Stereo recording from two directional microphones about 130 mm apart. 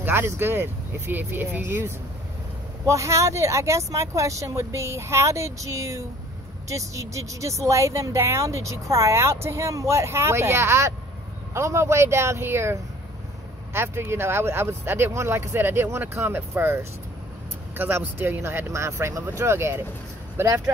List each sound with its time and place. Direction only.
0.0 s speech: 15° right (ahead or behind)
13.7 s speech: 20° right (ahead or behind)